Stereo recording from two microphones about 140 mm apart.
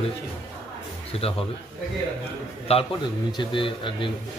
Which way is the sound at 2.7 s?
45° left (ahead or behind).